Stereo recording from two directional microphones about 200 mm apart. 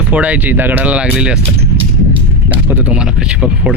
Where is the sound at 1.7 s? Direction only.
25° right (ahead or behind).